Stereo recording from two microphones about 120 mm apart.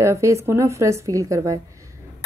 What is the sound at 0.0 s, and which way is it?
Speech, 25° right (ahead or behind).